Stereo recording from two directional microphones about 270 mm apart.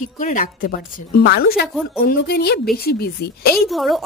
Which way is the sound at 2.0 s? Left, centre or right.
Left.